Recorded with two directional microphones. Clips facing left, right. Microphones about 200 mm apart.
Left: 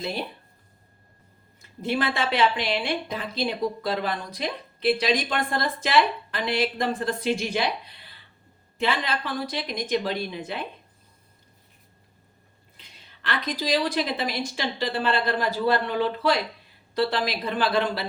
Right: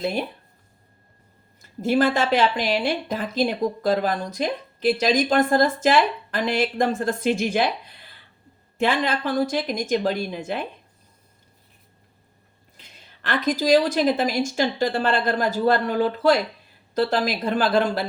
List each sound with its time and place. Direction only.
0.0 s speech: 50° right (ahead or behind)
1.8 s speech: 45° right (ahead or behind)
8.8 s speech: 50° right (ahead or behind)
13.2 s speech: 45° right (ahead or behind)